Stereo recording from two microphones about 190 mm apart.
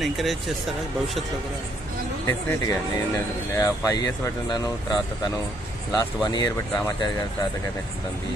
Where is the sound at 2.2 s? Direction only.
15° left (ahead or behind).